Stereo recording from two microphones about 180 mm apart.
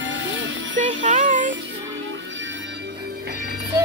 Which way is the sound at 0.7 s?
45° right (ahead or behind).